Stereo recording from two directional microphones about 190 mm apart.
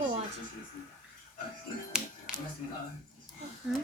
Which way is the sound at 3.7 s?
Centre (ahead or behind).